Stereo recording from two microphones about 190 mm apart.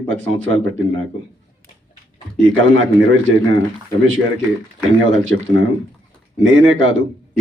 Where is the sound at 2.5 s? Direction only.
90° right.